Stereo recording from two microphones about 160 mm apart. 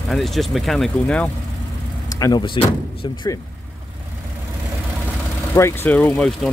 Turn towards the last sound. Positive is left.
turn(degrees=5)  # may be behind; listen again after turning